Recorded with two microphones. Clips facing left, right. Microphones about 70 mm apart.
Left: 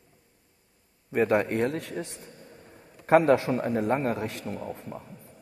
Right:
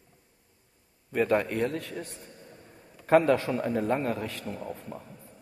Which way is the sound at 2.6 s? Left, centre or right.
Centre.